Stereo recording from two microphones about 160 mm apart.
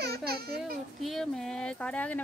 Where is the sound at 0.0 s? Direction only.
75° right (ahead or behind).